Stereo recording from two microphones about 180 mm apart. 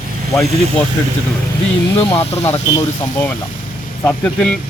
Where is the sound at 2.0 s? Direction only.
35° left (ahead or behind).